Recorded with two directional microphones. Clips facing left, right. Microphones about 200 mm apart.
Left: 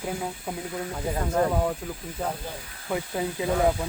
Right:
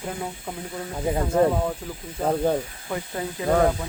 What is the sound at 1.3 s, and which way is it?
Speech, centre (ahead or behind).